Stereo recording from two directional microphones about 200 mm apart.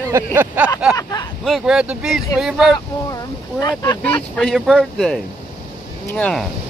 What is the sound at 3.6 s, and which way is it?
Speech, 20° left (ahead or behind).